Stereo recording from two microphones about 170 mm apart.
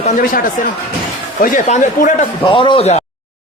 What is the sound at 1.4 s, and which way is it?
Speech, 50° left (ahead or behind).